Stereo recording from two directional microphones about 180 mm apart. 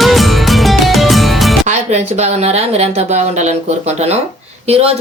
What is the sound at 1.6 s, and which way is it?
Speech, 40° right (ahead or behind).